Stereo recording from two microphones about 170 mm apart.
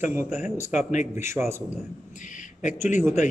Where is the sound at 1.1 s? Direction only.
15° right (ahead or behind).